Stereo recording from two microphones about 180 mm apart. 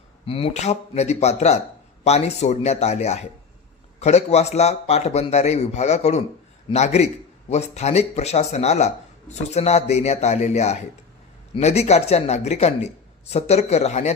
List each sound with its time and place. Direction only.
0.3 s speech: 30° left (ahead or behind)